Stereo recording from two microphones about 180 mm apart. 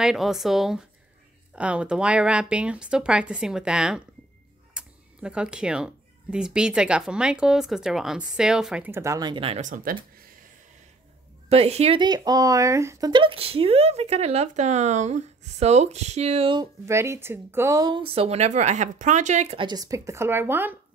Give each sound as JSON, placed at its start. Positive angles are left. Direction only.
{"t": 0.0, "sound": "speech", "side_deg": 0}
{"t": 11.4, "sound": "speech", "side_deg": -35}
{"t": 16.8, "sound": "speech", "side_deg": -15}